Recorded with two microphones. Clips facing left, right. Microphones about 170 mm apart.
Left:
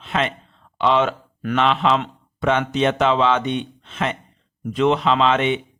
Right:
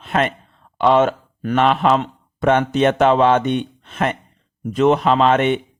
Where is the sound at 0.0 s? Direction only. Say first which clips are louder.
Right 3 dB; 50° right (ahead or behind).